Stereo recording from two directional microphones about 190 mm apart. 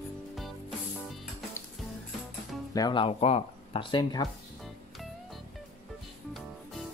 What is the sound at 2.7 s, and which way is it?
Speech, 20° left (ahead or behind).